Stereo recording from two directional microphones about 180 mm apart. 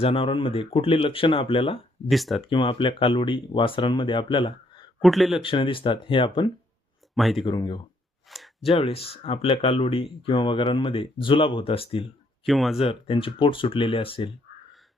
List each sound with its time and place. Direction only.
0.0 s speech: 30° left (ahead or behind)
2.0 s speech: centre (ahead or behind)
2.5 s speech: 30° left (ahead or behind)
4.9 s speech: centre (ahead or behind)
5.4 s speech: 30° left (ahead or behind)
7.2 s speech: centre (ahead or behind)
7.4 s speech: 25° left (ahead or behind)
8.3 s a sound: centre (ahead or behind)
8.6 s speech: 30° left (ahead or behind)
12.5 s speech: centre (ahead or behind)
12.8 s speech: 30° left (ahead or behind)